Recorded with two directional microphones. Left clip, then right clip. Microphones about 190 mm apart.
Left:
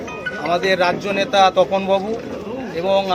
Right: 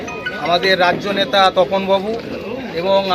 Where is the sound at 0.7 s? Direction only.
Centre (ahead or behind).